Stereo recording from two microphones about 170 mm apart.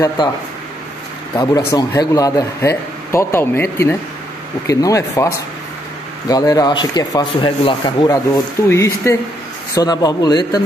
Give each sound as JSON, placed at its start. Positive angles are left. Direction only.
{"t": 1.3, "sound": "a man's voice", "side_deg": 20}